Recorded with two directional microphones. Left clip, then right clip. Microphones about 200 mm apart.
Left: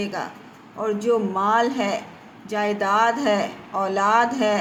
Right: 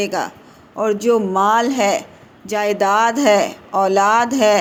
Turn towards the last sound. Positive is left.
turn(degrees=-40)  # may be behind; listen again after turning